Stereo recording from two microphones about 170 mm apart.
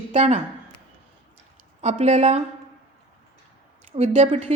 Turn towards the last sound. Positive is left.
turn(degrees=-40)  # may be behind; listen again after turning